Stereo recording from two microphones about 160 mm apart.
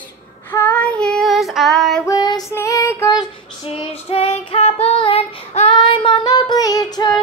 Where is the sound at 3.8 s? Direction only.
40° left (ahead or behind).